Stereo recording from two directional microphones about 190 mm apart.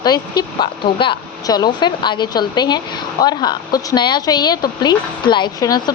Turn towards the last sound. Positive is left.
turn(degrees=20)  # may be behind; listen again after turning